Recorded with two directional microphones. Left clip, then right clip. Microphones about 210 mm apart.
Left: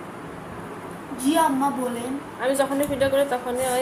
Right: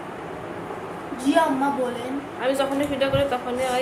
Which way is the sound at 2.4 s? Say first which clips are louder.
Left 1 dB; 15° left (ahead or behind).